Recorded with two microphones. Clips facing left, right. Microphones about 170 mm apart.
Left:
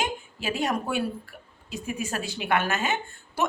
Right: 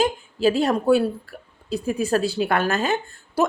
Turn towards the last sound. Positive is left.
turn(degrees=-35)  # may be behind; listen again after turning